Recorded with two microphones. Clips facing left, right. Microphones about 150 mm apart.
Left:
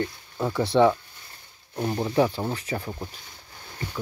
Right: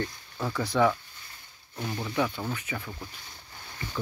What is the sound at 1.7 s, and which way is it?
Speech, 40° left (ahead or behind).